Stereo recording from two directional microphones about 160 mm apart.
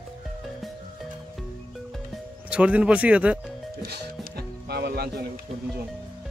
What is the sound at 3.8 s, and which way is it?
Music, 80° right.